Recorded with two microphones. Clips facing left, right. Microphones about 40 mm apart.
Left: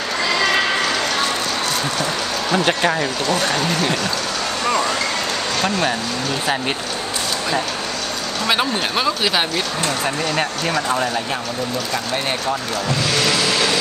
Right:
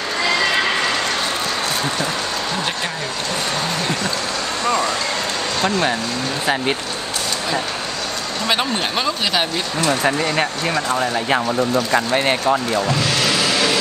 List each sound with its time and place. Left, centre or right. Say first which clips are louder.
8.5 s speech: left 1 dB; centre
10.9 s speech: even; centre
11.9 s speech: right 5 dB; right